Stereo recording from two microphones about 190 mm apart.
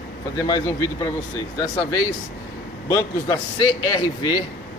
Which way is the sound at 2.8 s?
15° left (ahead or behind).